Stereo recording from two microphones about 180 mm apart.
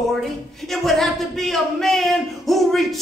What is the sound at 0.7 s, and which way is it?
Speech, centre (ahead or behind).